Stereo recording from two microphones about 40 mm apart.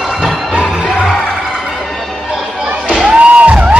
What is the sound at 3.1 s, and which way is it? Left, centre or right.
Music, right.